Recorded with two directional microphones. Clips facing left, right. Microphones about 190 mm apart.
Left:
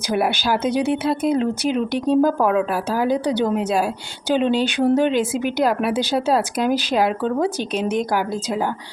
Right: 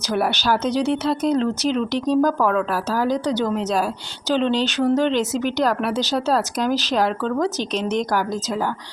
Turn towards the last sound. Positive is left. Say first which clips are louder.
# left 1 dB
turn(degrees=10)  # may be behind; listen again after turning